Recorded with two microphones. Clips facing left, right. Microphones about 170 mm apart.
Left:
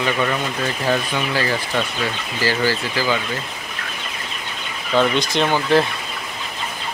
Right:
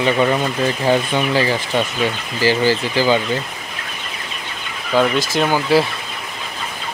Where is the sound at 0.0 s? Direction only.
25° right (ahead or behind).